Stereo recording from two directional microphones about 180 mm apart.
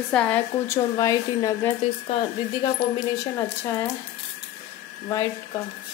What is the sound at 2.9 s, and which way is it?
Speech, 20° left (ahead or behind).